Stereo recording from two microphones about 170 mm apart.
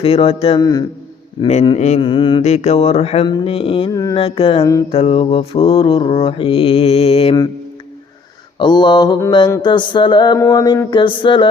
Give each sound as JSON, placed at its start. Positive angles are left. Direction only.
{"t": 0.0, "sound": "mantra", "side_deg": 35}
{"t": 0.6, "sound": "mantra", "side_deg": 20}
{"t": 1.6, "sound": "mantra", "side_deg": 40}
{"t": 3.9, "sound": "mantra", "side_deg": 20}
{"t": 4.2, "sound": "mantra", "side_deg": 35}
{"t": 4.6, "sound": "mantra", "side_deg": 20}
{"t": 4.9, "sound": "mantra", "side_deg": 35}
{"t": 8.5, "sound": "mantra", "side_deg": 25}